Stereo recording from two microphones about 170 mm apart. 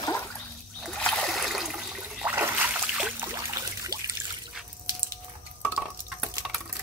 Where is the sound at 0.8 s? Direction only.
5° left (ahead or behind).